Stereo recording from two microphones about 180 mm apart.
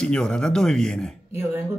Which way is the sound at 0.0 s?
5° left (ahead or behind).